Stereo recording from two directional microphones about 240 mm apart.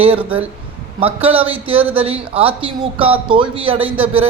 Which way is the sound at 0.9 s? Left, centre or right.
Right.